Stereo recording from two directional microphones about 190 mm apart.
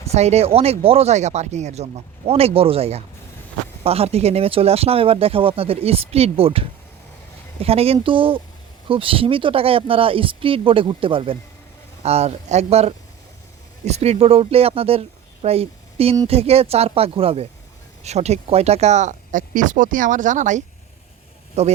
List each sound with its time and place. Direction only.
0.0 s speech: 35° right (ahead or behind)